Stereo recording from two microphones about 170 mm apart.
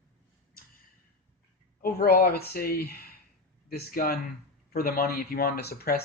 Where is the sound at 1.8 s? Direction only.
65° left (ahead or behind).